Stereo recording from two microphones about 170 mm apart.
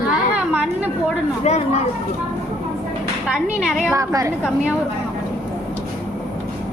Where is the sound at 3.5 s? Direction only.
5° right (ahead or behind).